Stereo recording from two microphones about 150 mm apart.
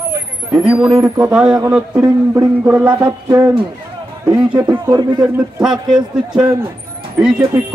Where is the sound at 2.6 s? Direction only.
15° right (ahead or behind).